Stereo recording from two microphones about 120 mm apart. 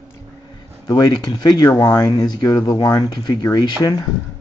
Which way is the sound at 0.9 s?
35° left (ahead or behind).